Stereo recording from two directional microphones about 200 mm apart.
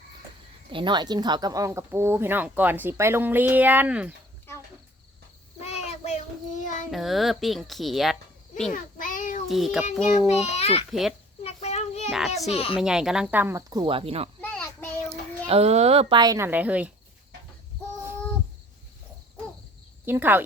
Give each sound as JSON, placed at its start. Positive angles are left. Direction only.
{"t": 0.7, "sound": "speech", "side_deg": -25}
{"t": 5.5, "sound": "child singing", "side_deg": 30}
{"t": 6.9, "sound": "speech", "side_deg": 0}
{"t": 8.7, "sound": "child singing", "side_deg": 40}
{"t": 9.5, "sound": "speech", "side_deg": 0}
{"t": 10.2, "sound": "a child's voice", "side_deg": 35}
{"t": 11.4, "sound": "a sound", "side_deg": 30}
{"t": 12.5, "sound": "speech", "side_deg": 30}
{"t": 12.8, "sound": "speech", "side_deg": -5}
{"t": 14.4, "sound": "child singing", "side_deg": 10}
{"t": 15.1, "sound": "a woman's voice", "side_deg": -30}
{"t": 20.1, "sound": "speech", "side_deg": -10}